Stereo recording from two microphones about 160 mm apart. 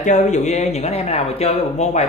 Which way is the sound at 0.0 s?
50° left (ahead or behind).